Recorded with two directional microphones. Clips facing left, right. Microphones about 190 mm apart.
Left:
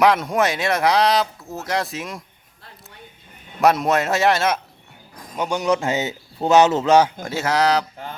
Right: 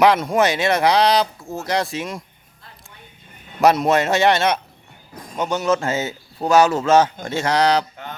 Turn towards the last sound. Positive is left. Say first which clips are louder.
# right 1 dB
turn(degrees=0)  # may be behind; listen again after turning